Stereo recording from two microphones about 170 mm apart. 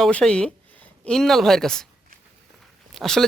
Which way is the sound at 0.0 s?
5° left (ahead or behind).